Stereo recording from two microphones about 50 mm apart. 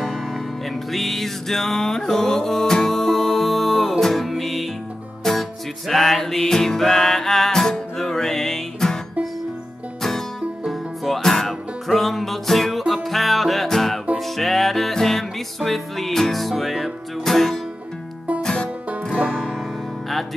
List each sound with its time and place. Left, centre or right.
0.0 s music: centre
10.6 s music: centre